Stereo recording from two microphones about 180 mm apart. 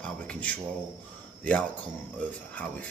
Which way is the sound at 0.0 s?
5° left (ahead or behind).